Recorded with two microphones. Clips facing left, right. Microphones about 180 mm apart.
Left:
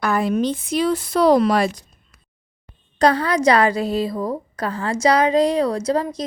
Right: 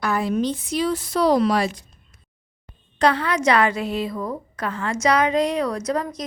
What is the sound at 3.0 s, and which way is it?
A woman's voice, 40° left (ahead or behind).